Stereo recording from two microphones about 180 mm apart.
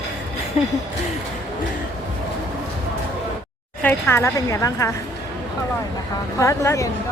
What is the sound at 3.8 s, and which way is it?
A woman's voice, 10° left (ahead or behind).